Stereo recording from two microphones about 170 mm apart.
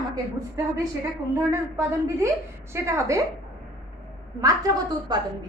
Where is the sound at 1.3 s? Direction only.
15° right (ahead or behind).